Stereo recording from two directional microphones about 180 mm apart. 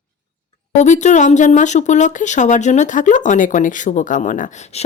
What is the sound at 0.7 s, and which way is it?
Speech, 40° left (ahead or behind).